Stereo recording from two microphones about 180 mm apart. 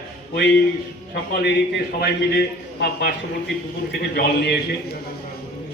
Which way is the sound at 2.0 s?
65° left (ahead or behind).